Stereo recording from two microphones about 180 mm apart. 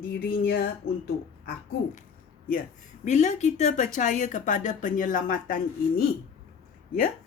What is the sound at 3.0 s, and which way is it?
Speech, 40° left (ahead or behind).